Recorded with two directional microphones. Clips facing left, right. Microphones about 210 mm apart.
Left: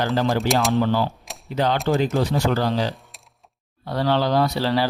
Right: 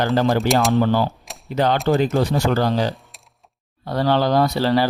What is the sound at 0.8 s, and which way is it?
Speech, 50° right (ahead or behind).